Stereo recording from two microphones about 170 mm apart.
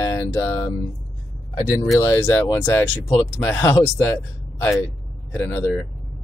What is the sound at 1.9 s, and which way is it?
Speech, 15° left (ahead or behind).